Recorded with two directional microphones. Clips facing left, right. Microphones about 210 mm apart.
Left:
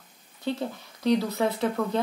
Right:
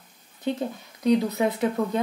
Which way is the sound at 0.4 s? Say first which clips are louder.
Right 2 dB; 15° right (ahead or behind).